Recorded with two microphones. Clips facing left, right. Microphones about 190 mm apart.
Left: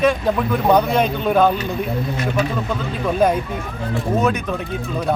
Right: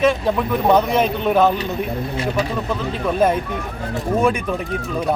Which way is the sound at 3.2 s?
5° right (ahead or behind).